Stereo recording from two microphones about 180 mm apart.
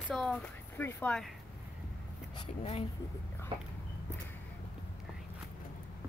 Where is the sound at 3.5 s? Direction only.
30° right (ahead or behind).